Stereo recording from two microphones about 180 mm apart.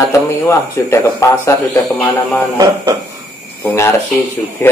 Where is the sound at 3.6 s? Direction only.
15° left (ahead or behind).